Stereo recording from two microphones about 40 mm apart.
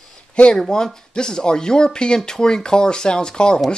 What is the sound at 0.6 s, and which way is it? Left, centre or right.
Speech, centre.